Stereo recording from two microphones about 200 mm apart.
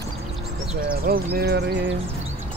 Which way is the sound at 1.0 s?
50° right (ahead or behind).